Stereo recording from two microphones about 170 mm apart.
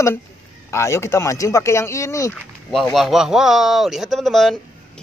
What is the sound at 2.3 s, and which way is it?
Speech, 5° left (ahead or behind).